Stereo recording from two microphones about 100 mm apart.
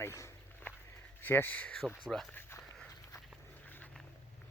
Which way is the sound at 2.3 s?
20° left (ahead or behind).